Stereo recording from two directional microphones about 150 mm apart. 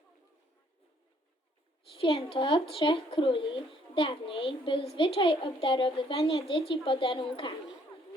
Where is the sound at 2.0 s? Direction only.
35° left (ahead or behind).